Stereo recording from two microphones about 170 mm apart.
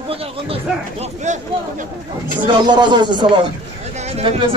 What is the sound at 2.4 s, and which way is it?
A man's voice, 25° right (ahead or behind).